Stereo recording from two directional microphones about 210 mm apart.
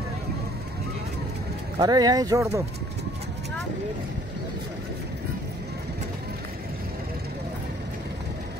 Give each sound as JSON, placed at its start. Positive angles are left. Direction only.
{"t": 1.8, "sound": "speech", "side_deg": -20}